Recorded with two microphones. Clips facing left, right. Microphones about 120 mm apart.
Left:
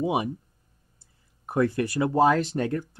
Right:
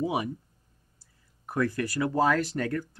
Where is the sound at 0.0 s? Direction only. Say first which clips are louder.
Left 3 dB; 25° left (ahead or behind).